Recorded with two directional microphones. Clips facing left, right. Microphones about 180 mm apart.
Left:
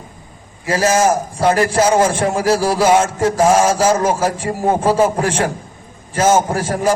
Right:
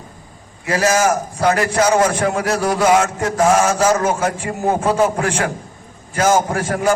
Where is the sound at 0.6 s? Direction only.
30° left (ahead or behind).